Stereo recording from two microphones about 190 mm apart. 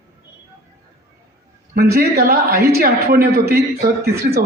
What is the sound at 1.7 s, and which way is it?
A man's voice, 55° right (ahead or behind).